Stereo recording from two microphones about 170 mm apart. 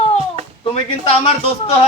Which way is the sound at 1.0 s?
35° left (ahead or behind).